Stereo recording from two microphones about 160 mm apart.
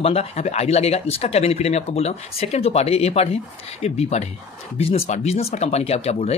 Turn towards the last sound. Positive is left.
turn(degrees=40)  # may be behind; listen again after turning